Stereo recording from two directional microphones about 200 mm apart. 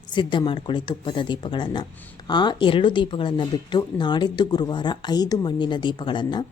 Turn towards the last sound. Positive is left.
turn(degrees=25)  # may be behind; listen again after turning